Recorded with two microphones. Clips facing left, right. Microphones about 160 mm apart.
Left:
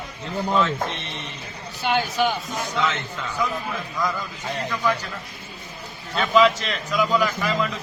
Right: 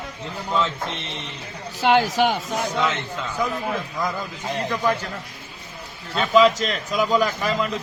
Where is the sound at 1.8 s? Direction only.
90° right.